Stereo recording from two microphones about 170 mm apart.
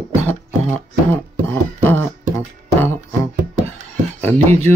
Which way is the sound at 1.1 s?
10° left (ahead or behind).